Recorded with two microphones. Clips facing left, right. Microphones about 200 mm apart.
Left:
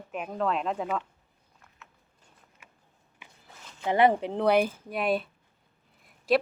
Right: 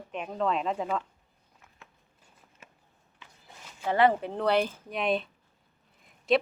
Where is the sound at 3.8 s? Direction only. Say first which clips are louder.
Left 1 dB; 15° left (ahead or behind).